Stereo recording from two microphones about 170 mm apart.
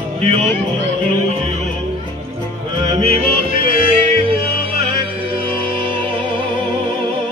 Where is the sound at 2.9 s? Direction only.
35° right (ahead or behind).